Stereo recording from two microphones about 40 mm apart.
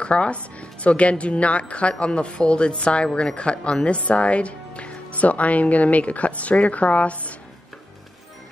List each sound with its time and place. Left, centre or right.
0.0 s speech: left